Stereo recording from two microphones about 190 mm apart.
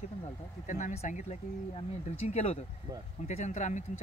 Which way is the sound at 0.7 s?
40° left (ahead or behind).